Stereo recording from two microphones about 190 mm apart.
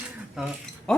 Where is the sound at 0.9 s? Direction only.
5° left (ahead or behind).